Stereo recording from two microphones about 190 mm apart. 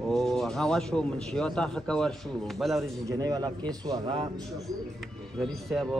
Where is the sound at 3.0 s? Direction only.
20° right (ahead or behind).